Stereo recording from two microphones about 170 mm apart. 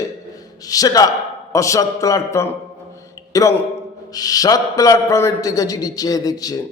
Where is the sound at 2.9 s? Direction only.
20° left (ahead or behind).